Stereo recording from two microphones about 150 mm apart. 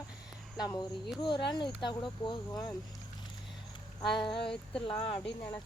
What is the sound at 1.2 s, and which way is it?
Speech, 30° left (ahead or behind).